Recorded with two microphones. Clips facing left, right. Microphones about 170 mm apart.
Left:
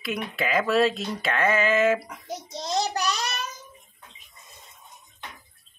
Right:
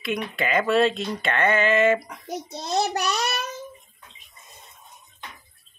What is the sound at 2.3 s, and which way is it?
Speech, 60° right (ahead or behind).